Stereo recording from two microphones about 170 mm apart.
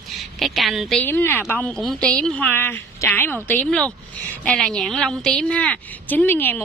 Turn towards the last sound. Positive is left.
turn(degrees=10)  # may be behind; listen again after turning